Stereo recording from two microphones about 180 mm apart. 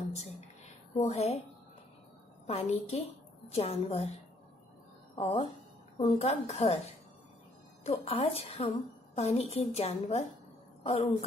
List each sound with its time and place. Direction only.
0.9 s a woman's voice: 35° left (ahead or behind)
2.4 s a woman's voice: 35° left (ahead or behind)
5.1 s a woman's voice: 35° left (ahead or behind)
7.8 s a woman's voice: 35° left (ahead or behind)